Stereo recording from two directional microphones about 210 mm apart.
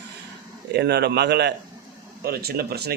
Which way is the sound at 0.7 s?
50° right (ahead or behind).